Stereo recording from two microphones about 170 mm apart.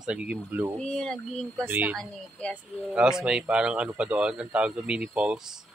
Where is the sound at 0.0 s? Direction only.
5° right (ahead or behind).